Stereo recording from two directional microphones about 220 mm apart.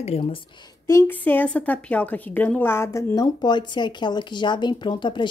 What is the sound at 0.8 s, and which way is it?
A woman's voice, 10° left (ahead or behind).